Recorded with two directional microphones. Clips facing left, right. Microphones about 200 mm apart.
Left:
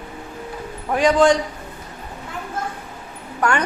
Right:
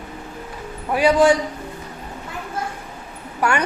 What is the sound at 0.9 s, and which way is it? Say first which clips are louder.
Speech: even; 10° right (ahead or behind).